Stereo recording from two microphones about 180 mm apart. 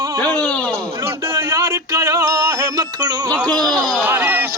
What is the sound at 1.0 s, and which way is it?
Music, 15° right (ahead or behind).